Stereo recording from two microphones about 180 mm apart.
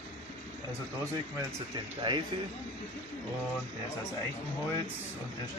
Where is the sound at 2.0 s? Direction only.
25° right (ahead or behind).